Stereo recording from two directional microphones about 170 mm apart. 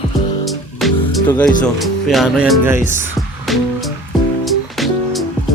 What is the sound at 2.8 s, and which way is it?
Speech, 50° left (ahead or behind).